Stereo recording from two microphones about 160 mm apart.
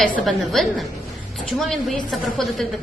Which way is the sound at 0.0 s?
Centre (ahead or behind).